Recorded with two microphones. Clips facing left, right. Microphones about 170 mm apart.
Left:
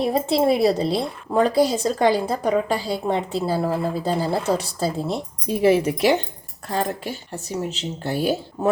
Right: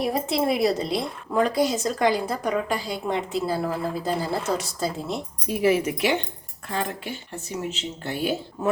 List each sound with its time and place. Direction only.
0.0 s a woman's voice: 25° left (ahead or behind)